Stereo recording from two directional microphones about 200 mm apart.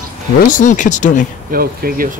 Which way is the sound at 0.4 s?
40° left (ahead or behind).